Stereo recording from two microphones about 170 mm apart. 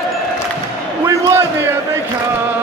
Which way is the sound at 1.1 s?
15° right (ahead or behind).